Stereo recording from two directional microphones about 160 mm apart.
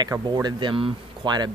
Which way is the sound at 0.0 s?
25° right (ahead or behind).